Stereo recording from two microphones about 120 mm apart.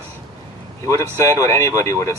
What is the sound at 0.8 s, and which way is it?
Speech, 25° left (ahead or behind).